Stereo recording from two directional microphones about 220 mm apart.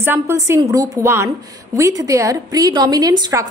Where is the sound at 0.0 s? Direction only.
10° right (ahead or behind).